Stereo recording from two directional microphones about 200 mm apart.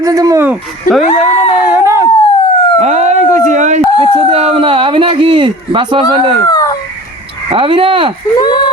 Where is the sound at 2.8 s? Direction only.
35° right (ahead or behind).